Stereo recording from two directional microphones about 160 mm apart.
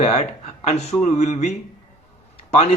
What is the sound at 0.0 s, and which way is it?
Speech, 40° left (ahead or behind).